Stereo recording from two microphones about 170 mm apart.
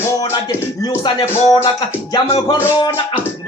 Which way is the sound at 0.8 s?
25° left (ahead or behind).